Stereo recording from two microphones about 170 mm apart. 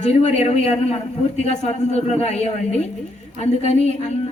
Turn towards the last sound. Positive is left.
turn(degrees=40)  # may be behind; listen again after turning